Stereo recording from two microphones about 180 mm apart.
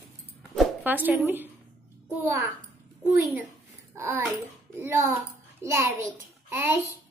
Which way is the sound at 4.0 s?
15° right (ahead or behind).